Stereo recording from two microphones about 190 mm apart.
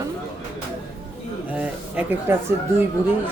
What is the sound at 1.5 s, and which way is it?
Speech, 5° right (ahead or behind).